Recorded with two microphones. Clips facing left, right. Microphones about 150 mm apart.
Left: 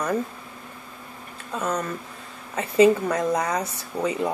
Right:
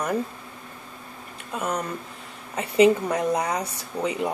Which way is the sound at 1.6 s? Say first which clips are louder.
Left 1 dB; 10° right (ahead or behind).